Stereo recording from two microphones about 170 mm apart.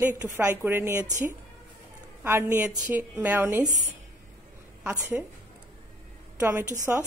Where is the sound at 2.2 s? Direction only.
15° right (ahead or behind).